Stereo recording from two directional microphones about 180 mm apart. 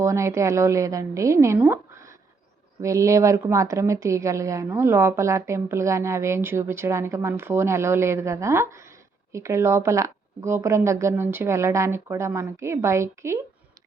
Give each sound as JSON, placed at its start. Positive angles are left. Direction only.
{"t": 0.0, "sound": "a woman's voice", "side_deg": -15}